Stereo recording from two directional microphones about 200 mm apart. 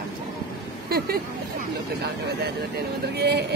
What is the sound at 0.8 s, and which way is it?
Vehicle, 50° right (ahead or behind).